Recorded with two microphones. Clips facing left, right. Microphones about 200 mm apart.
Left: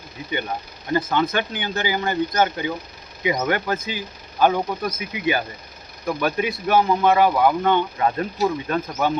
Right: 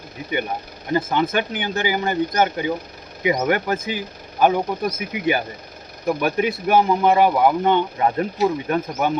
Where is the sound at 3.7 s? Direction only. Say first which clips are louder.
Right 2 dB; 25° right (ahead or behind).